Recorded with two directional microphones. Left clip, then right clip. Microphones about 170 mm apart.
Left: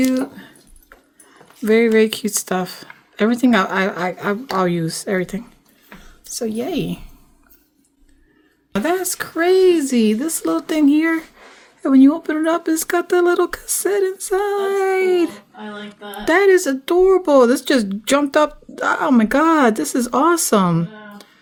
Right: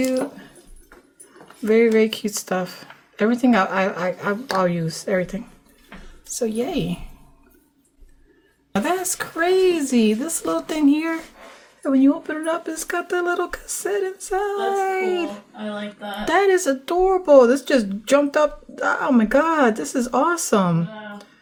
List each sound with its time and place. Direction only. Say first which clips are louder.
0.0 s speech: left 2 dB; 50° left (ahead or behind)
1.6 s speech: left 2 dB; 45° left (ahead or behind)
6.3 s a woman's voice: left 1 dB; 30° left (ahead or behind)
8.7 s a woman's voice: left 2 dB; 30° left (ahead or behind)
11.8 s speech: left 5 dB; 50° left (ahead or behind)
16.2 s speech: left 4 dB; 30° left (ahead or behind)